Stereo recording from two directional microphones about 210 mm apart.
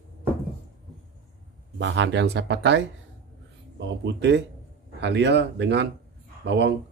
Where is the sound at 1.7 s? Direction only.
60° right (ahead or behind).